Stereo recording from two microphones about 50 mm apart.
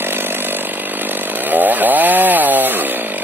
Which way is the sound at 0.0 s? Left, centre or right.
Right.